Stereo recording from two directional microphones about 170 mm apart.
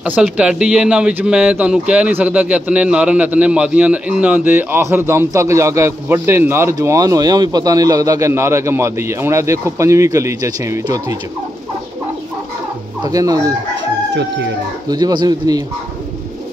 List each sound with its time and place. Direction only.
0.0 s speech: 5° right (ahead or behind)
13.0 s speech: 20° right (ahead or behind)
14.9 s speech: 25° right (ahead or behind)